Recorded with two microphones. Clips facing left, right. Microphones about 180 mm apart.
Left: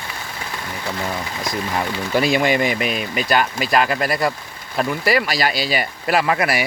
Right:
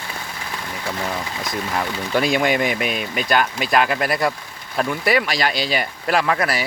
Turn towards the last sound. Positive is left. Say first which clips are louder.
# left 1 dB
turn(degrees=10)  # may be behind; listen again after turning